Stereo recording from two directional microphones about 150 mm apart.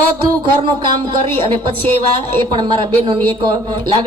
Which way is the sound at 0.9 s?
30° right (ahead or behind).